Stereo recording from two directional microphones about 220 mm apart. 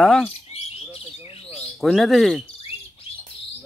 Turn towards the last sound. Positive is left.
turn(degrees=25)  # may be behind; listen again after turning